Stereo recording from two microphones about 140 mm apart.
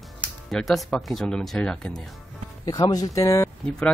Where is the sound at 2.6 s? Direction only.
25° left (ahead or behind).